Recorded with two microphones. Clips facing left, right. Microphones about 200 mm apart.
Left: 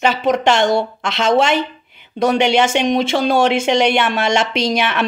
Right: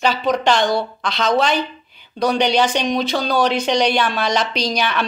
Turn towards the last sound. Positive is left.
turn(degrees=25)  # may be behind; listen again after turning